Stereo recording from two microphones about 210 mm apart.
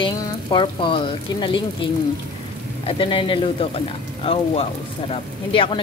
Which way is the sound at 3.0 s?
25° left (ahead or behind).